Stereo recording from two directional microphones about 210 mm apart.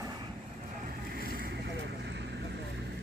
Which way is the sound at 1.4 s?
50° right (ahead or behind).